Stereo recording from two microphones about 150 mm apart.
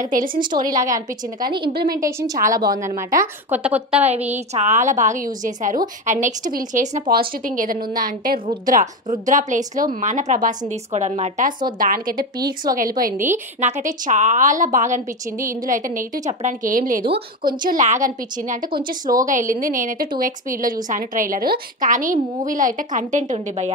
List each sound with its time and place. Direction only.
0.0 s a woman's voice: 65° right (ahead or behind)
0.6 s a woman's voice: 25° right (ahead or behind)
3.2 s a woman's voice: 10° right (ahead or behind)
4.1 s a woman's voice: 45° right (ahead or behind)
7.1 s a woman's voice: 70° right (ahead or behind); by 11.5 s 50° right (ahead or behind)
11.8 s a woman's voice: 70° right (ahead or behind); by 23.7 s 50° right (ahead or behind)